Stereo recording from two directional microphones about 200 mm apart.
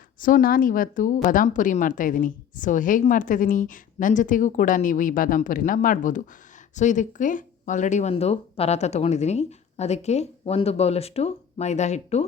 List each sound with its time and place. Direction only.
0.2 s a woman's voice: 45° left (ahead or behind)